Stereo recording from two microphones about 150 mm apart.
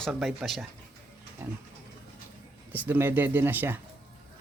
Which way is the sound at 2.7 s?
10° right (ahead or behind).